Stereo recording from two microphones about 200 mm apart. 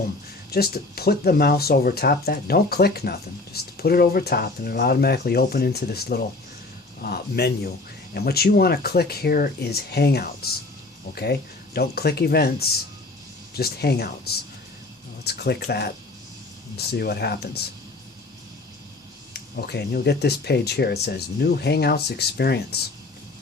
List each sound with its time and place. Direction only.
0.5 s speech: 50° left (ahead or behind)
19.3 s speech: 55° left (ahead or behind)